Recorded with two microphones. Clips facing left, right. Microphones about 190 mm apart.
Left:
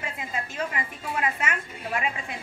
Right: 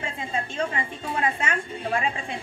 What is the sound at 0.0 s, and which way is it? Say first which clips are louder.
A woman's voice: right 3 dB; 30° right (ahead or behind).